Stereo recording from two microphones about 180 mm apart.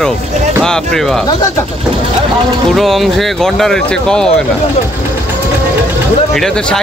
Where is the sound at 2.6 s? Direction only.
Centre (ahead or behind).